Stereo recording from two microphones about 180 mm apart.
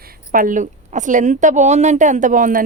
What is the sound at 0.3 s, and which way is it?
A woman's voice, 50° right (ahead or behind).